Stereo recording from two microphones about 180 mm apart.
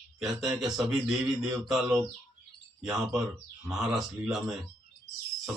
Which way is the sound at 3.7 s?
Centre (ahead or behind).